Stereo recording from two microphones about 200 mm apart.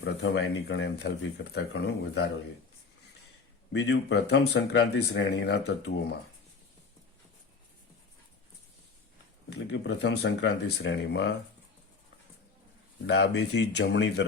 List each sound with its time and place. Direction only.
0.0 s speech: 60° left (ahead or behind)
3.7 s speech: 60° left (ahead or behind)
9.5 s speech: 60° left (ahead or behind)
13.1 s speech: 60° left (ahead or behind)